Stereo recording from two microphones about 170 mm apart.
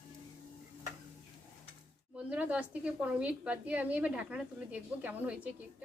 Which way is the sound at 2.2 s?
10° right (ahead or behind).